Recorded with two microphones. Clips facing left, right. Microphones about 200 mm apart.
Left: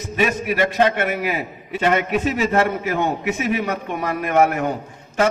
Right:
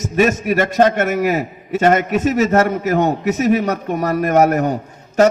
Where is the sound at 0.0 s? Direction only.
45° right (ahead or behind).